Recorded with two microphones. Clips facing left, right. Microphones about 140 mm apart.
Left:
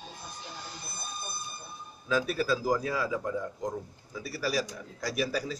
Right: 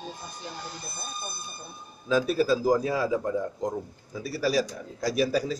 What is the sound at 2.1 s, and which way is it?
Speech, 25° right (ahead or behind).